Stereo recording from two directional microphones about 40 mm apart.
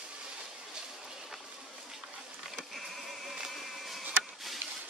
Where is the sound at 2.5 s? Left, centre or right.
Centre.